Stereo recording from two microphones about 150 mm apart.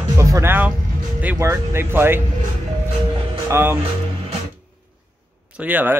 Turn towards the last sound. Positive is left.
turn(degrees=-10)  # may be behind; listen again after turning